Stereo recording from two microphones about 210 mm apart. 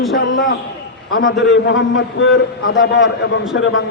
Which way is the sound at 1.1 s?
60° left (ahead or behind).